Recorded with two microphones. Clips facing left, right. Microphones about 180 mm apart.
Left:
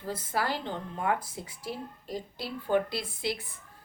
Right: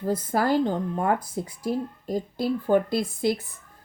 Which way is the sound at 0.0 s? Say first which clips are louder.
Right 8 dB; 40° right (ahead or behind).